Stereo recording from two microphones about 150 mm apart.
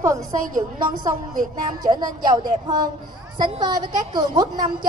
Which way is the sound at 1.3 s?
65° right (ahead or behind).